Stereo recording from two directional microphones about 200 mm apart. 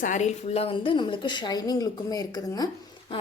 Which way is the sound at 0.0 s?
35° left (ahead or behind).